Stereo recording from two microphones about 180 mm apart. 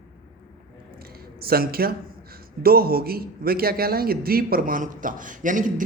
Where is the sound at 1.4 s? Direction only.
55° right (ahead or behind).